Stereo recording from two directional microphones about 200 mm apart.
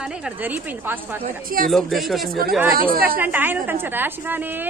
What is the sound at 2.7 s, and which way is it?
Speech, 45° right (ahead or behind).